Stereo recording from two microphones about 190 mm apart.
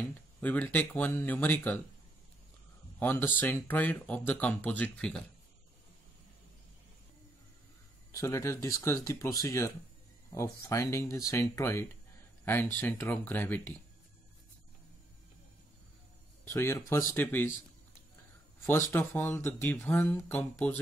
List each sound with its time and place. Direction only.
0.4 s speech: 10° left (ahead or behind)
3.0 s speech: 10° left (ahead or behind)
8.1 s speech: 15° left (ahead or behind)
16.4 s speech: 15° left (ahead or behind)
18.7 s speech: 10° left (ahead or behind)